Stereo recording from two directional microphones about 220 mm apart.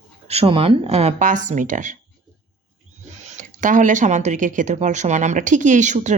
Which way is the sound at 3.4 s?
35° right (ahead or behind).